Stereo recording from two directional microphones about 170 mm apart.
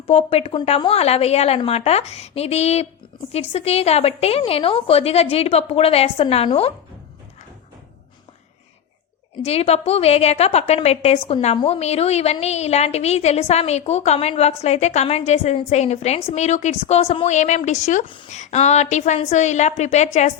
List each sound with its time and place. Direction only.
0.1 s a woman's voice: 35° left (ahead or behind)
9.4 s a woman's voice: 40° left (ahead or behind)